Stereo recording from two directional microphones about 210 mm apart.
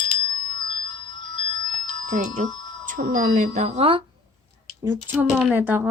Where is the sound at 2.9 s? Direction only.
40° right (ahead or behind).